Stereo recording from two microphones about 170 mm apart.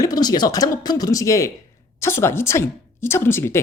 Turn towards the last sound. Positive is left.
turn(degrees=15)  # may be behind; listen again after turning